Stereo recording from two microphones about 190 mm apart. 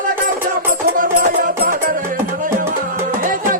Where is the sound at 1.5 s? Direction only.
50° right (ahead or behind).